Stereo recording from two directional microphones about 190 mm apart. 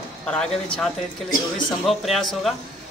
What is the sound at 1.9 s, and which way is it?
Speech, centre (ahead or behind).